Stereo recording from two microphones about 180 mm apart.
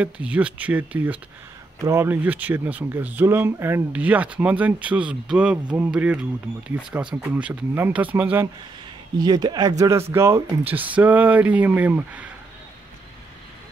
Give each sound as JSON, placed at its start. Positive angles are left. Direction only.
{"t": 0.0, "sound": "speech", "side_deg": -5}
{"t": 9.2, "sound": "speech", "side_deg": -25}